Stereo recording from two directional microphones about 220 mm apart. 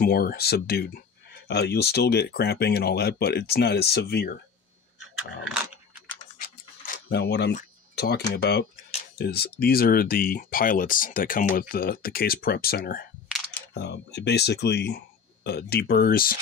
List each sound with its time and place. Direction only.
0.0 s speech: 40° left (ahead or behind)
6.3 s a sound: 40° left (ahead or behind)
7.5 s speech: 45° left (ahead or behind)